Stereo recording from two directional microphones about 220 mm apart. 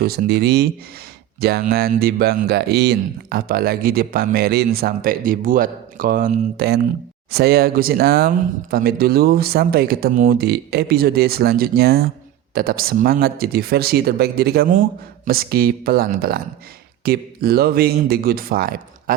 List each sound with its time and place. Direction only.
0.0 s speech: 45° right (ahead or behind)